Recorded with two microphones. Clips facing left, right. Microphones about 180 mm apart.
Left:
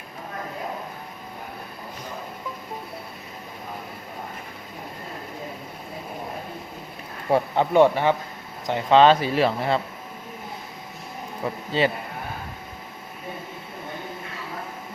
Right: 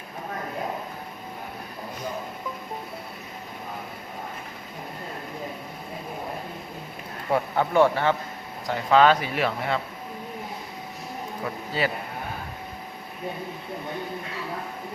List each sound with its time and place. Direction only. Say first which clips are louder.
7.3 s speech: left 3 dB; 25° left (ahead or behind)
11.7 s speech: left 5 dB; 25° left (ahead or behind)